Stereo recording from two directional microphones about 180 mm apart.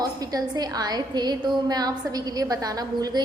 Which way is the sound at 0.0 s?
20° right (ahead or behind).